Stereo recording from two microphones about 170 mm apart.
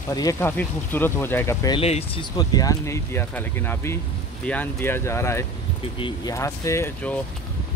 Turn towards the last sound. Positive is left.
turn(degrees=15)  # may be behind; listen again after turning